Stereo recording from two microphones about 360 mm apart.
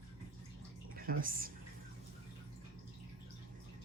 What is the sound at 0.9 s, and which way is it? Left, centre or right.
Speech, right.